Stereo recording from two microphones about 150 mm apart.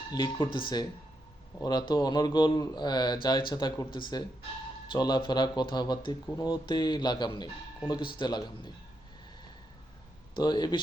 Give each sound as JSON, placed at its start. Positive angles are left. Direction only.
{"t": 0.1, "sound": "speech", "side_deg": 30}
{"t": 10.3, "sound": "speech", "side_deg": 30}